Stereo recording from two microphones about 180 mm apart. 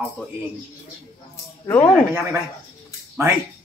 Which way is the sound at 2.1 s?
15° right (ahead or behind).